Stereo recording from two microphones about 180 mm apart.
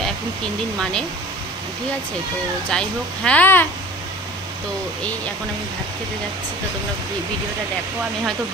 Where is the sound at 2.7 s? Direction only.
5° left (ahead or behind).